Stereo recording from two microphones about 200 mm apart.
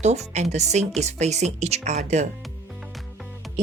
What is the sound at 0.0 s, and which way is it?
Speech, 35° right (ahead or behind).